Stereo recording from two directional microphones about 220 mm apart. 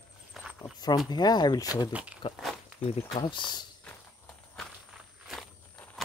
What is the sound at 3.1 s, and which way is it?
Speech, 20° left (ahead or behind).